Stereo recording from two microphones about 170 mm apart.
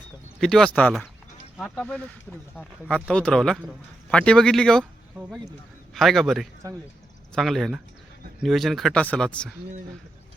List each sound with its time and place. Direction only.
0.3 s speech: 5° left (ahead or behind)
5.9 s speech: centre (ahead or behind)